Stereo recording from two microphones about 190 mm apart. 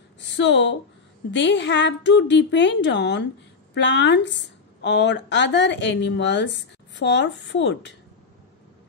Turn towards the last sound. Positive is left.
turn(degrees=70)  # may be behind; listen again after turning